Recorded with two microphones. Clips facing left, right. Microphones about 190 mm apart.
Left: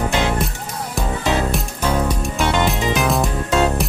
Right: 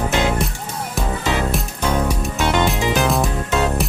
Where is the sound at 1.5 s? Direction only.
10° left (ahead or behind).